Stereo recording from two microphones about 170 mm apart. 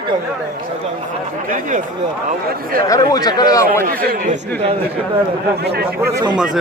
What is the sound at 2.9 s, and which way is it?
Speech, 20° left (ahead or behind).